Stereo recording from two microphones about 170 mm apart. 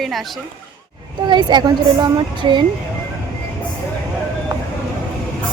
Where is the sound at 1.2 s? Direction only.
25° right (ahead or behind).